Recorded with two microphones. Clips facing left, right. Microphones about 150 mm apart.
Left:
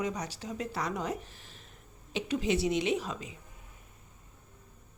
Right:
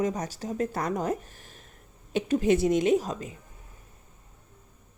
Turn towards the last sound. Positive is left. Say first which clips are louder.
# right 7 dB
turn(degrees=-45)  # may be behind; listen again after turning